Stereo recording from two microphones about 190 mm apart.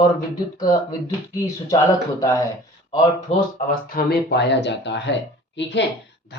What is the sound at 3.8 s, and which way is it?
A woman's voice, 55° left (ahead or behind).